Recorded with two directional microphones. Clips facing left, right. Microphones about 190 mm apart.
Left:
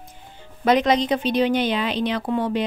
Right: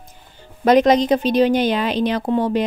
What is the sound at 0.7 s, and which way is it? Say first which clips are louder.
Speech: right 5 dB; 45° right (ahead or behind).